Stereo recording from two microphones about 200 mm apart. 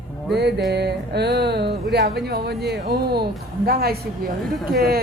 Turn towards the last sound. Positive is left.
turn(degrees=-50)  # may be behind; listen again after turning